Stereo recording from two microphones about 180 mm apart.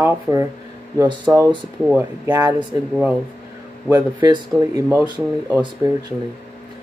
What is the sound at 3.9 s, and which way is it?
Speech, 15° right (ahead or behind).